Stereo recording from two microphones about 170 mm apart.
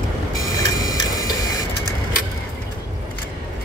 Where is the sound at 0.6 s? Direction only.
20° left (ahead or behind).